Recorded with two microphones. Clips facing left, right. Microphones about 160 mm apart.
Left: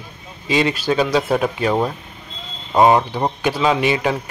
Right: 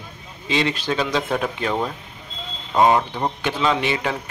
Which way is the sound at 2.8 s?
10° left (ahead or behind).